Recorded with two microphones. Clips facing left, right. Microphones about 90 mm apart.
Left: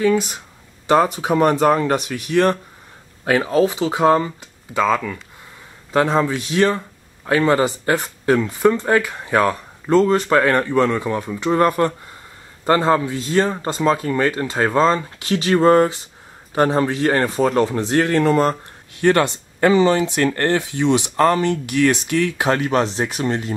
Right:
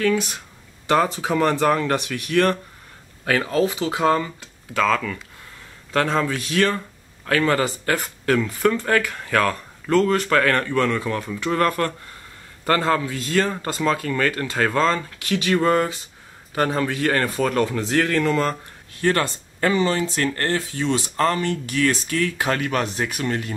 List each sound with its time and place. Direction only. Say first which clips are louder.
0.8 s speech: left 4 dB; 20° left (ahead or behind)
4.4 s speech: left 2 dB; 10° left (ahead or behind); by 23.5 s 30° left (ahead or behind)